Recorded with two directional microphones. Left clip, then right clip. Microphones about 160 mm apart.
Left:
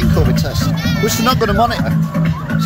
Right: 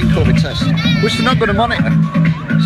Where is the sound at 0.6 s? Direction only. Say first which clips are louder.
Right 2 dB; 20° right (ahead or behind).